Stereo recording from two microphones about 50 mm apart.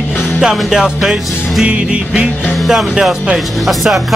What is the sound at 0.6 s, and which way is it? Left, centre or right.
Music, centre.